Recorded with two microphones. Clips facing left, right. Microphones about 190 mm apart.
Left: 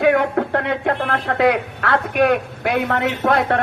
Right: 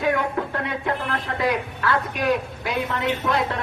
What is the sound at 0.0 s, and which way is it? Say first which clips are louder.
Speech: left 7 dB; 65° left (ahead or behind).